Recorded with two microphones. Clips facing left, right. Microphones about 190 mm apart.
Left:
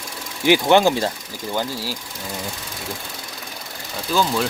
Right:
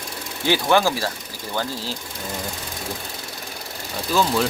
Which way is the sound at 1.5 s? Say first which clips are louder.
Left 1 dB; 10° left (ahead or behind).